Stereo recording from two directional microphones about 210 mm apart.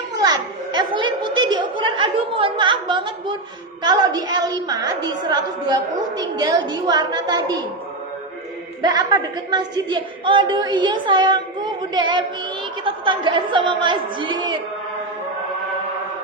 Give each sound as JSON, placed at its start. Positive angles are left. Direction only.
{"t": 0.1, "sound": "a sound", "side_deg": -20}
{"t": 3.8, "sound": "a woman's voice", "side_deg": -20}
{"t": 8.8, "sound": "a woman's voice", "side_deg": -20}